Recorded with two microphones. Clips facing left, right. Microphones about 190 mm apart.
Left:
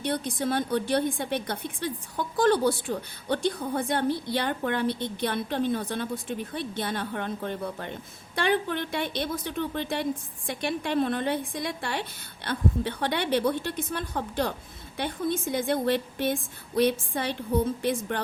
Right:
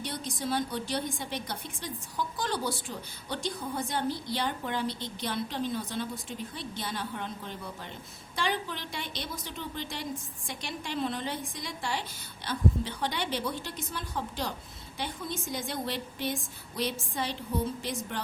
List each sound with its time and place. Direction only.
0.0 s a woman's voice: 60° left (ahead or behind)